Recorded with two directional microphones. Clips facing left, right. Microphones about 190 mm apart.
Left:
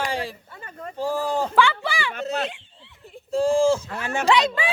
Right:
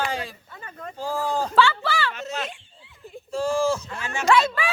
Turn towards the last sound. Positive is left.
turn(degrees=20)  # may be behind; listen again after turning